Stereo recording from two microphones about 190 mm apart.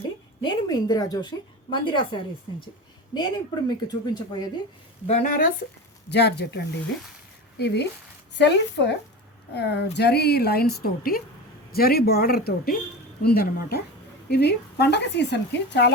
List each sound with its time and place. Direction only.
0.4 s speech: 25° left (ahead or behind)
3.2 s speech: 25° left (ahead or behind)
5.0 s speech: 40° left (ahead or behind)
6.1 s a woman's voice: 60° left (ahead or behind)